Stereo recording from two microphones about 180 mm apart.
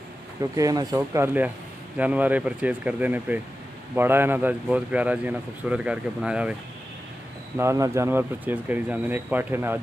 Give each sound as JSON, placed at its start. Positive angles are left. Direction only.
{"t": 0.4, "sound": "speech", "side_deg": -20}
{"t": 7.5, "sound": "speech", "side_deg": -15}